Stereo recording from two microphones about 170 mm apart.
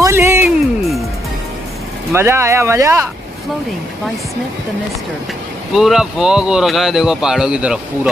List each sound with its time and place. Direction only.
0.0 s music: 15° right (ahead or behind)
2.1 s speech: 15° right (ahead or behind)
5.7 s speech: centre (ahead or behind)